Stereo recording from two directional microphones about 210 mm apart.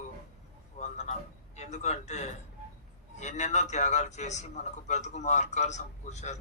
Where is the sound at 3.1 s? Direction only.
35° left (ahead or behind).